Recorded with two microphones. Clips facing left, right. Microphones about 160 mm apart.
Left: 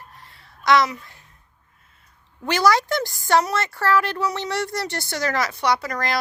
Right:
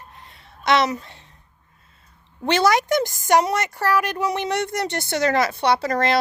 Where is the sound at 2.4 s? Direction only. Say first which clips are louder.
Right 1 dB; 25° right (ahead or behind).